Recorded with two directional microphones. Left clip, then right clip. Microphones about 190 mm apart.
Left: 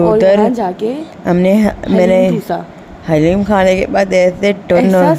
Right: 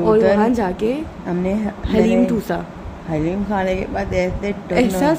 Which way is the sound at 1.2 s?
55° left (ahead or behind).